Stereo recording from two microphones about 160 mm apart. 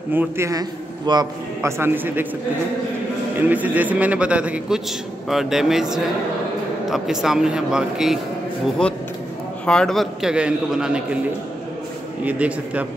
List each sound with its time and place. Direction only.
0.1 s a man's voice: 15° right (ahead or behind)
1.8 s a man's voice: 15° right (ahead or behind)
3.3 s a man's voice: 10° right (ahead or behind)
9.7 s speech: 5° left (ahead or behind)
12.3 s a man's voice: 10° right (ahead or behind)